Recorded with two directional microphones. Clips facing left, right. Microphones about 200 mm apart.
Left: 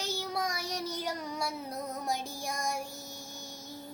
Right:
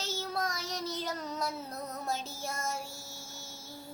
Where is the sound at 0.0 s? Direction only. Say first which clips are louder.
Left 1 dB; 15° left (ahead or behind).